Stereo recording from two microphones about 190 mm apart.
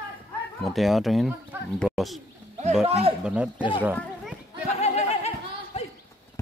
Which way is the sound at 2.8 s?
35° right (ahead or behind).